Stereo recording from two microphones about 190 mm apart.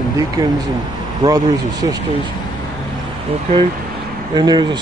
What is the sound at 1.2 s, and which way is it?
Speech, 20° right (ahead or behind).